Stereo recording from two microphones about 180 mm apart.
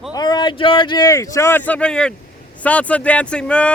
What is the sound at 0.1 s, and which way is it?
A man's voice, 25° left (ahead or behind).